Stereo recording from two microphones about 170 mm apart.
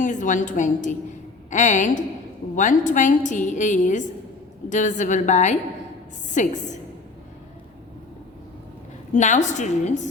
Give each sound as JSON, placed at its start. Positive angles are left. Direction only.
{"t": 0.0, "sound": "a woman's voice", "side_deg": 45}
{"t": 9.1, "sound": "a woman's voice", "side_deg": 45}